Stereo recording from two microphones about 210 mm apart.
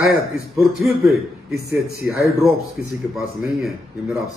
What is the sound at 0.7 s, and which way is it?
Speech, centre (ahead or behind).